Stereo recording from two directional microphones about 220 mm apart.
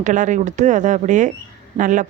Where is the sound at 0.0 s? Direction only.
35° right (ahead or behind).